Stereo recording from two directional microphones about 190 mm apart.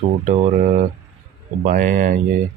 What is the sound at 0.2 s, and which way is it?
Speech, 45° right (ahead or behind).